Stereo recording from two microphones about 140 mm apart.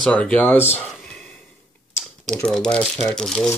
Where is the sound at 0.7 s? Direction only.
5° left (ahead or behind).